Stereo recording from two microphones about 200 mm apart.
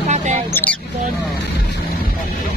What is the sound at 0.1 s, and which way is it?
Mouse, 35° right (ahead or behind).